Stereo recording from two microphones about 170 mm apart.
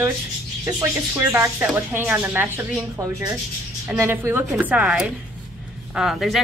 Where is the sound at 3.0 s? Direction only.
20° right (ahead or behind).